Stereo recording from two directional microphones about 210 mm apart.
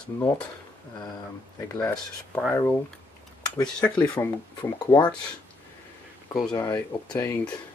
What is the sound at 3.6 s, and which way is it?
Speech, 5° left (ahead or behind).